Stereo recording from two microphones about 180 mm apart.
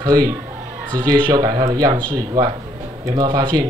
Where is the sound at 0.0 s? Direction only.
20° right (ahead or behind).